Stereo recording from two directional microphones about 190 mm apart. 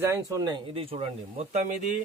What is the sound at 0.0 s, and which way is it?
Speech, 15° right (ahead or behind).